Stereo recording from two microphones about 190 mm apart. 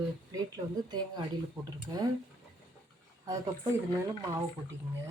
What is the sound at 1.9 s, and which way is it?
Speech, 20° right (ahead or behind).